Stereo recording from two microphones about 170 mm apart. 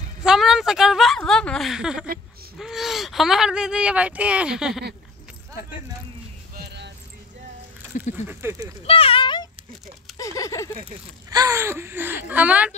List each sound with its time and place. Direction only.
0.2 s speech: 5° right (ahead or behind)
6.6 s music: 90° right
8.3 s speech: 15° right (ahead or behind)
8.8 s a sound: 35° left (ahead or behind); by 10.7 s 20° left (ahead or behind)
11.2 s speech: 20° right (ahead or behind)